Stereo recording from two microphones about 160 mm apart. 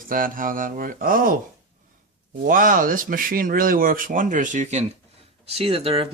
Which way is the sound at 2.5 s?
60° right (ahead or behind).